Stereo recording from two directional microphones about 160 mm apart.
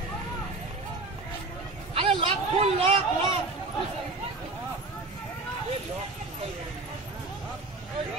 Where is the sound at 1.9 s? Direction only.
35° right (ahead or behind).